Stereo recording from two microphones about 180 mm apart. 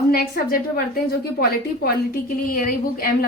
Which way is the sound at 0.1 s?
55° left (ahead or behind).